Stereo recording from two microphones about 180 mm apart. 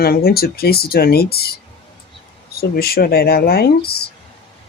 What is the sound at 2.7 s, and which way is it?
Speech, 60° left (ahead or behind).